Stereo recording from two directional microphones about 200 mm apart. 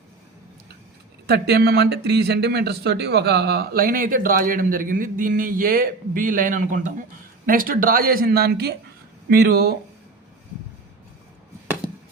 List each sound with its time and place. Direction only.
1.3 s speech: 55° right (ahead or behind)